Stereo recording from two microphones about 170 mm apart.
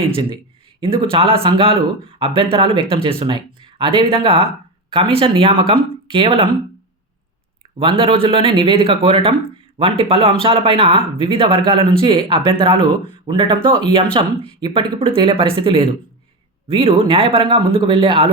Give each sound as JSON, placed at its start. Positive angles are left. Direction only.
{"t": 0.8, "sound": "speech", "side_deg": -30}
{"t": 7.8, "sound": "speech", "side_deg": -30}